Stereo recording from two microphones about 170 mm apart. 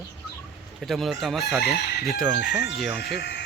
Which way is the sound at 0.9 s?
Centre (ahead or behind).